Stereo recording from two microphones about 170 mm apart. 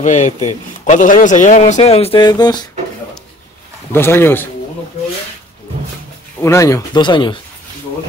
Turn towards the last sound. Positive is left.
turn(degrees=25)  # may be behind; listen again after turning